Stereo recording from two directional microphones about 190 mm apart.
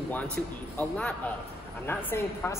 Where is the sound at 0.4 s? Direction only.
10° left (ahead or behind).